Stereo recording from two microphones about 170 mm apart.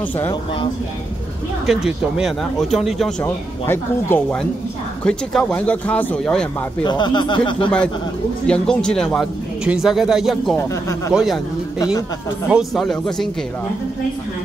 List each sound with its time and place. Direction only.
1.7 s speech: 5° right (ahead or behind)
3.3 s speech: 10° left (ahead or behind)
6.8 s speech: 25° left (ahead or behind)
8.5 s speech: 5° left (ahead or behind)
10.6 s speech: 15° left (ahead or behind)
12.4 s speech: centre (ahead or behind)